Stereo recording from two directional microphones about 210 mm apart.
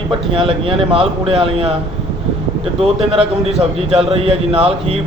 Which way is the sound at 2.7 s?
30° right (ahead or behind).